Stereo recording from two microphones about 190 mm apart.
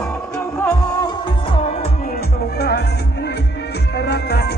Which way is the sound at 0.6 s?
25° left (ahead or behind).